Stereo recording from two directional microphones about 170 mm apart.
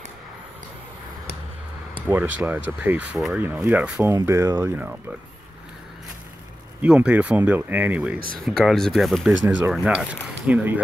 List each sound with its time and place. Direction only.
2.0 s speech: 10° right (ahead or behind)
3.9 s speech: 20° right (ahead or behind)
6.8 s speech: 5° right (ahead or behind)
8.5 s speech: centre (ahead or behind)
9.3 s speech: 90° right
9.7 s speech: 5° right (ahead or behind)